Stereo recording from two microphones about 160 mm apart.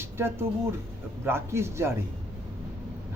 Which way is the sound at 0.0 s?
15° right (ahead or behind).